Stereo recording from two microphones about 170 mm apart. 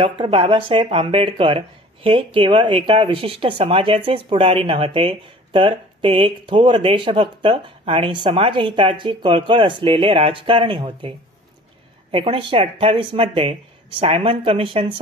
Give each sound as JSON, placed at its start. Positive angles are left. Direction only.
{"t": 0.0, "sound": "speech", "side_deg": -30}